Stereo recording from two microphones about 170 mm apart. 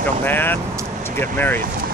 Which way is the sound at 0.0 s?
10° left (ahead or behind).